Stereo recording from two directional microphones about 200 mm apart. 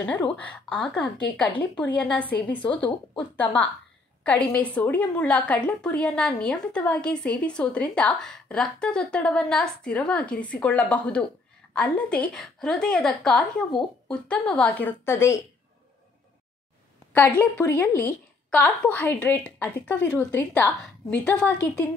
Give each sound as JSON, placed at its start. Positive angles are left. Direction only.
{"t": 0.0, "sound": "a woman's voice", "side_deg": 5}
{"t": 4.2, "sound": "a woman's voice", "side_deg": 5}
{"t": 17.4, "sound": "a woman's voice", "side_deg": 10}